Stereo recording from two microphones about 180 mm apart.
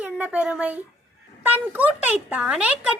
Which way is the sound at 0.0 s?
10° right (ahead or behind).